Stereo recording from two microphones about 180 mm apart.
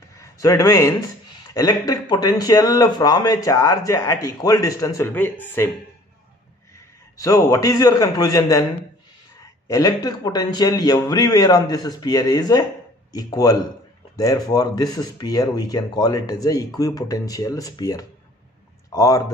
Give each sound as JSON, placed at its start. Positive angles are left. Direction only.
{"t": 0.2, "sound": "a man's voice", "side_deg": 15}
{"t": 7.2, "sound": "speech", "side_deg": 20}
{"t": 9.7, "sound": "speech", "side_deg": 20}